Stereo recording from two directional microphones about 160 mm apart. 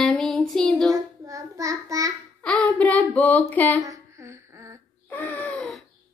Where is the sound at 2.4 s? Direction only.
5° left (ahead or behind).